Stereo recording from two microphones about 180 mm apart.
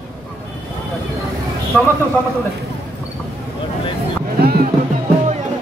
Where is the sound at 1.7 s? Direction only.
5° left (ahead or behind).